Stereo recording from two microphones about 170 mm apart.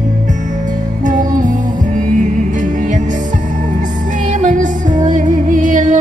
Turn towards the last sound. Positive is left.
turn(degrees=-50)  # may be behind; listen again after turning